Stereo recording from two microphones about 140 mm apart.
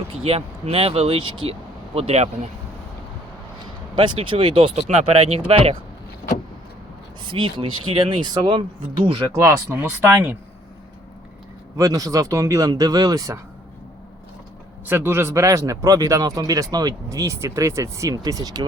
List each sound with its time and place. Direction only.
0.3 s speech: 45° right (ahead or behind)
3.9 s speech: 35° right (ahead or behind)
7.3 s speech: 35° right (ahead or behind); by 10.3 s 20° right (ahead or behind)
11.8 s speech: 25° right (ahead or behind)
14.8 s speech: 15° right (ahead or behind)